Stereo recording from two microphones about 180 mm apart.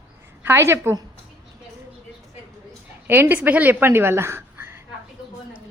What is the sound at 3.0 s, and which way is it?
Speech, 10° right (ahead or behind).